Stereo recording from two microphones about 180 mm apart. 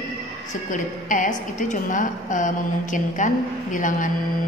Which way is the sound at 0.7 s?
45° left (ahead or behind).